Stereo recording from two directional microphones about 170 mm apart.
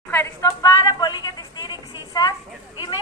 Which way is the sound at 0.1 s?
15° left (ahead or behind).